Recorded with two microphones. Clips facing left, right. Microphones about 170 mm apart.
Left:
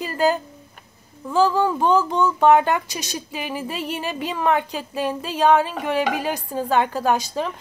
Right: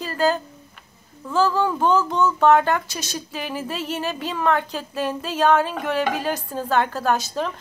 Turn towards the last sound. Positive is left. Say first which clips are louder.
# left 1 dB
turn(degrees=10)  # may be behind; listen again after turning